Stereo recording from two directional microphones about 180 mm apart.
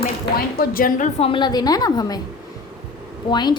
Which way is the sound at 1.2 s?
30° left (ahead or behind).